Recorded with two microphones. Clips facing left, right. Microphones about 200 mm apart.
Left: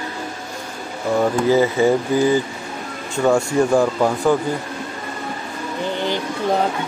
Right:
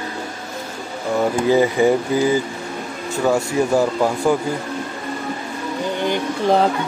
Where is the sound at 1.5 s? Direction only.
15° right (ahead or behind).